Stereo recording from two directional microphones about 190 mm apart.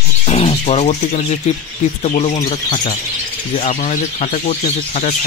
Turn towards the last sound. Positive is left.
turn(degrees=40)  # may be behind; listen again after turning